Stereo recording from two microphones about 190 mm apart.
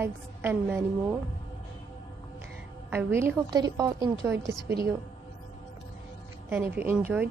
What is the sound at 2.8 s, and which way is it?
A woman's voice, 10° right (ahead or behind).